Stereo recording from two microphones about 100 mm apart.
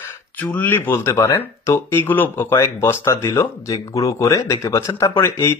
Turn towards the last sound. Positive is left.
turn(degrees=30)  # may be behind; listen again after turning